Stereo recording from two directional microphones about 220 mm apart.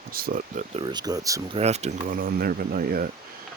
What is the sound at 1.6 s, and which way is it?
Speech, 30° right (ahead or behind).